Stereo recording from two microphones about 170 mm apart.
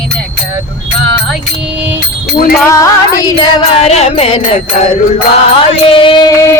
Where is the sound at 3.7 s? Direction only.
40° left (ahead or behind).